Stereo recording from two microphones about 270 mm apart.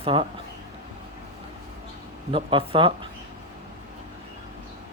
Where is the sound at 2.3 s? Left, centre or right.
Centre.